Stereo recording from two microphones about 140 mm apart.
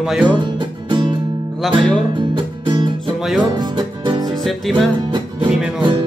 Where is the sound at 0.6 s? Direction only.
35° right (ahead or behind).